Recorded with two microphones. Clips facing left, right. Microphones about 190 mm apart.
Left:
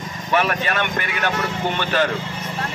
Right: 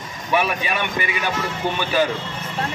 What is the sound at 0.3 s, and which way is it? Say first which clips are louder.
Speech: left 1 dB; 10° right (ahead or behind).